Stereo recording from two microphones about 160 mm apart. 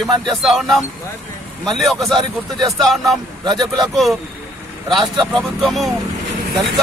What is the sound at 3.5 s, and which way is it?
A man's voice, centre (ahead or behind).